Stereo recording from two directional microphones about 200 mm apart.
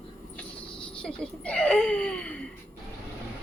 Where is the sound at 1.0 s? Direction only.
5° left (ahead or behind).